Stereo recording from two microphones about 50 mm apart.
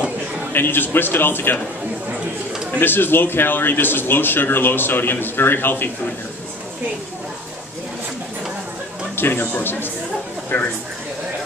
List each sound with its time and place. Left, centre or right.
0.5 s speech: left
2.8 s speech: left
9.1 s speech: left